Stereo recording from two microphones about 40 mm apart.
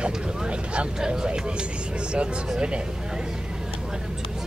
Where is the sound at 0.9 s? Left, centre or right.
Centre.